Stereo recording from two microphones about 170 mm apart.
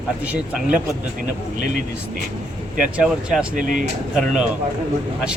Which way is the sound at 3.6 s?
50° right (ahead or behind).